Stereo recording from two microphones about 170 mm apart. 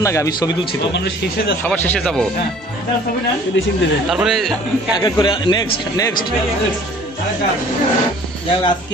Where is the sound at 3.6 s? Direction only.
90° left.